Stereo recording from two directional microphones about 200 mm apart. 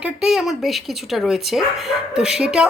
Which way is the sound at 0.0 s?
Centre (ahead or behind).